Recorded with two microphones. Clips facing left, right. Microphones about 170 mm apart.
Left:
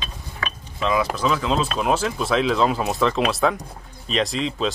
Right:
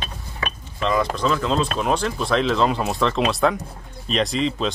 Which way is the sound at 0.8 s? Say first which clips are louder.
Even; 5° left (ahead or behind).